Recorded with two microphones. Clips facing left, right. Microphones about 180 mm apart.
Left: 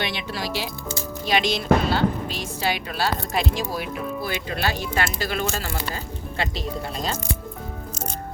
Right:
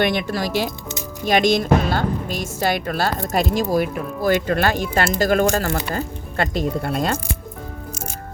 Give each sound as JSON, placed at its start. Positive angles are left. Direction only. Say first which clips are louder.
{"t": 0.0, "sound": "speech", "louder": "right 8 dB", "side_deg": -50}